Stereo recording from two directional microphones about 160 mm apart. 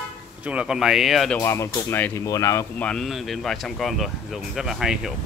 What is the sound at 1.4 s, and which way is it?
Speech, 15° left (ahead or behind).